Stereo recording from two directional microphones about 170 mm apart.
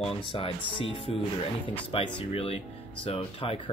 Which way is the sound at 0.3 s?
30° left (ahead or behind).